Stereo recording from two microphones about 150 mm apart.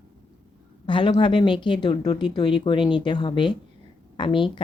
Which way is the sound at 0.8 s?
30° left (ahead or behind).